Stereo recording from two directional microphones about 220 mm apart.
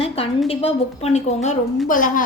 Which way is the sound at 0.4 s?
25° left (ahead or behind).